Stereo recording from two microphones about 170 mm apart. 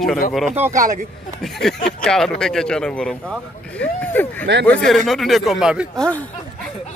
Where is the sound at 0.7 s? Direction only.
45° right (ahead or behind).